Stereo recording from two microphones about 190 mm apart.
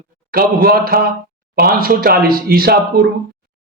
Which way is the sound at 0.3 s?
50° right (ahead or behind).